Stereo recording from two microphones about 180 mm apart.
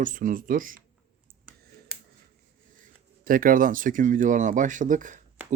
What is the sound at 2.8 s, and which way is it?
Speech, 50° right (ahead or behind).